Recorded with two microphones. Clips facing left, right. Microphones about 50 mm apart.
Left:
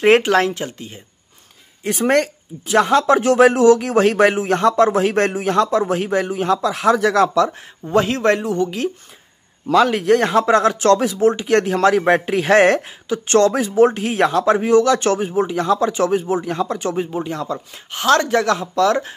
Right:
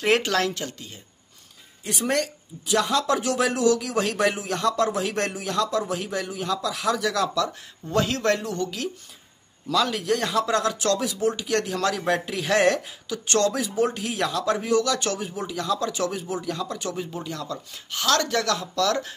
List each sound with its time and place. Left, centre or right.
0.2 s speech: left
1.9 s speech: left
9.7 s speech: left